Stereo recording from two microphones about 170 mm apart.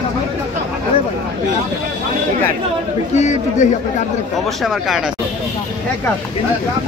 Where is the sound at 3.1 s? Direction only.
45° left (ahead or behind).